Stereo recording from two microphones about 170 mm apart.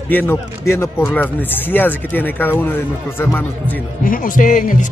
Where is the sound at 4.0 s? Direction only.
55° left (ahead or behind).